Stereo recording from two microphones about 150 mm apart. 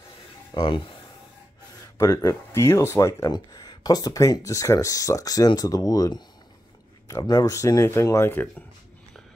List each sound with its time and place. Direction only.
0.6 s speech: 35° left (ahead or behind)
2.0 s speech: 20° left (ahead or behind)